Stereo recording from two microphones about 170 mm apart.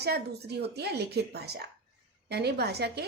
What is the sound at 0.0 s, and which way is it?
A woman's voice, 70° right (ahead or behind).